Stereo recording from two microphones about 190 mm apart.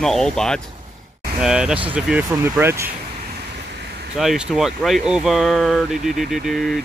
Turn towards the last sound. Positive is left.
turn(degrees=0)  # may be behind; listen again after turning